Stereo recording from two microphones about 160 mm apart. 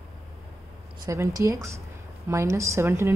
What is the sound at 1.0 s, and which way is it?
A woman's voice, 20° right (ahead or behind).